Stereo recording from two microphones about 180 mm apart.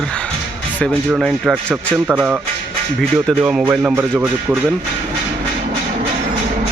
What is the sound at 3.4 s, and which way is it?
Speech, 5° right (ahead or behind).